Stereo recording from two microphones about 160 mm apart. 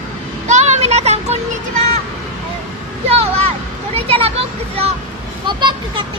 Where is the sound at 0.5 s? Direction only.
45° right (ahead or behind).